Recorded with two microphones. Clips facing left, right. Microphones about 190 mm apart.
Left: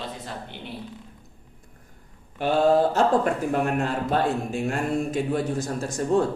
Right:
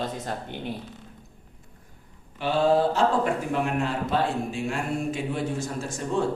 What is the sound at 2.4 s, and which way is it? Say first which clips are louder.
A man's voice: left 2 dB; 45° left (ahead or behind).